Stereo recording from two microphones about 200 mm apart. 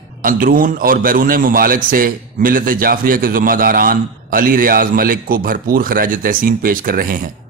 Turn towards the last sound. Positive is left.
turn(degrees=-45)  # may be behind; listen again after turning